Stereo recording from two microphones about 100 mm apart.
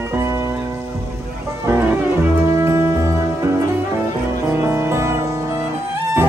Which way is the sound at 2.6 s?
25° right (ahead or behind).